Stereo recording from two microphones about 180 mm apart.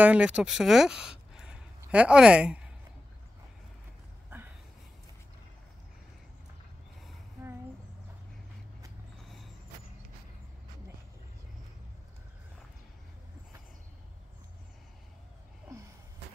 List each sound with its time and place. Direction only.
0.0 s speech: 5° right (ahead or behind)